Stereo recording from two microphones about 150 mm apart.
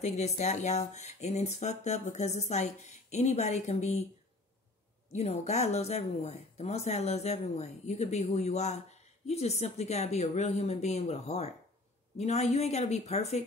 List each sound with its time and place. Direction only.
0.0 s speech: 50° left (ahead or behind)
5.1 s speech: 45° left (ahead or behind)